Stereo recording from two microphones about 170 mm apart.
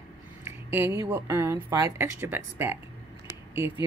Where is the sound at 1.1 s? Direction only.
15° right (ahead or behind).